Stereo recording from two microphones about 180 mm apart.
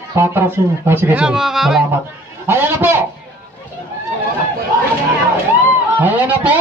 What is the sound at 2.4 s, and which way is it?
Speech, 10° right (ahead or behind).